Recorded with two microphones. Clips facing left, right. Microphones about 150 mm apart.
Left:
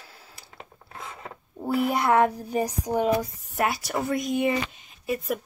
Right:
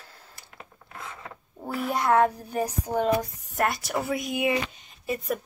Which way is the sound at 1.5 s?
10° left (ahead or behind).